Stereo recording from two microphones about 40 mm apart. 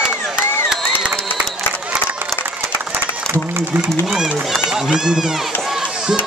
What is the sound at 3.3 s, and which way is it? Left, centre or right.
Speech, right.